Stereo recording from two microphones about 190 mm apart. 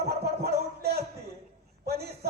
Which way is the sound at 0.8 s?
55° right (ahead or behind).